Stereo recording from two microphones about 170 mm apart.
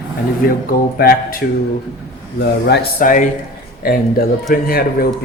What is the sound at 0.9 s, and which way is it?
Speech, 65° left (ahead or behind).